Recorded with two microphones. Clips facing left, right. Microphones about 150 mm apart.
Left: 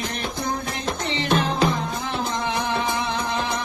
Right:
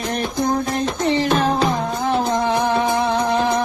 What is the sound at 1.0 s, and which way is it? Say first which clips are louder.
Music: right 5 dB; 40° right (ahead or behind).